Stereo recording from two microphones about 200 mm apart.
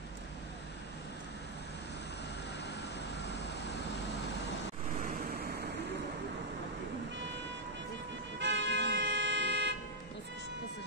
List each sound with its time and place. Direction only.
5.0 s vehicle: 50° right (ahead or behind)
8.4 s vehicle: 60° right (ahead or behind)